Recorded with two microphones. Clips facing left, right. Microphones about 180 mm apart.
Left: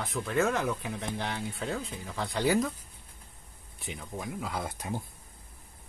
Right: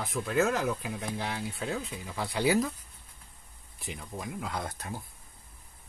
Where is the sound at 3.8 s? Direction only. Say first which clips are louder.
Left 1 dB; centre (ahead or behind).